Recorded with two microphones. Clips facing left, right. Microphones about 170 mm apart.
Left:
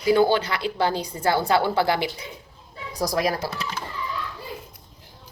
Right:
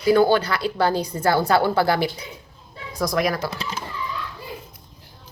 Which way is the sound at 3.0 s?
35° left (ahead or behind).